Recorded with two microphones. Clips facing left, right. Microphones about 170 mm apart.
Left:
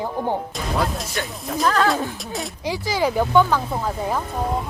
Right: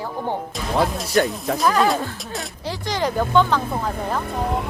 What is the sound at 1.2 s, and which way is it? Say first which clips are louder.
Speech: right 12 dB; 45° right (ahead or behind).